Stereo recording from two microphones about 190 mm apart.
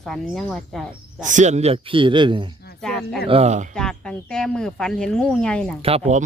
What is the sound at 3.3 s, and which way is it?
Speech, 35° right (ahead or behind).